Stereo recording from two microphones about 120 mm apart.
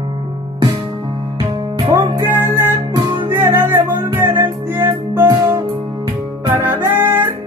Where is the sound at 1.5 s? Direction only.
35° right (ahead or behind).